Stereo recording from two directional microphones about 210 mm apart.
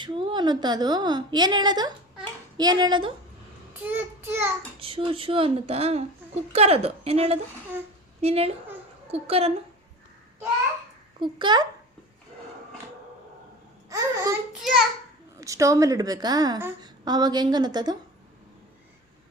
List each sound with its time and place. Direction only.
0.0 s speech: 20° right (ahead or behind)
3.8 s a child's voice: 10° right (ahead or behind)
4.8 s speech: 25° right (ahead or behind)
11.2 s speech: 20° right (ahead or behind)
13.9 s speech: 15° right (ahead or behind)
15.4 s speech: 15° right (ahead or behind)